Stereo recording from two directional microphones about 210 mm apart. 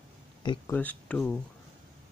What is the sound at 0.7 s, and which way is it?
Speech, 5° left (ahead or behind).